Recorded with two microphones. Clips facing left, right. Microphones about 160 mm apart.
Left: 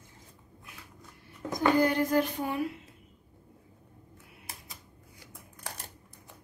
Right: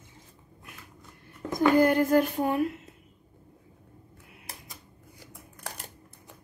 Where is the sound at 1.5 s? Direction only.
50° right (ahead or behind).